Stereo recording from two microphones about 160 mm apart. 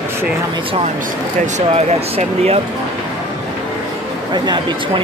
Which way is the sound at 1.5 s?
45° right (ahead or behind).